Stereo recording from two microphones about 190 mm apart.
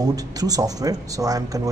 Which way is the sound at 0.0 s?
20° right (ahead or behind).